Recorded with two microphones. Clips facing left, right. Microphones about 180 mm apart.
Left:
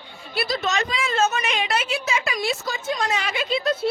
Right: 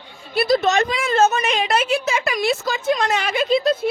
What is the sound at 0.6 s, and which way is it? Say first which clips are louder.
A woman's voice: right 6 dB; 50° right (ahead or behind).